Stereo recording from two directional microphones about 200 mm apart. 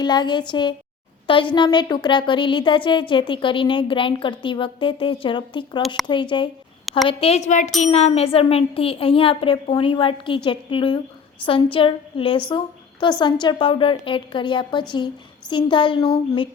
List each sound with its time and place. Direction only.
0.0 s a woman's voice: 20° left (ahead or behind)